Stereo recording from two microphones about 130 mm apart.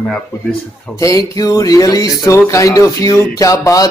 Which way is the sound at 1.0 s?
25° left (ahead or behind).